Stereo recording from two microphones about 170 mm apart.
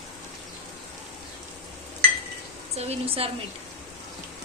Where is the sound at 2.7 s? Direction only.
40° right (ahead or behind).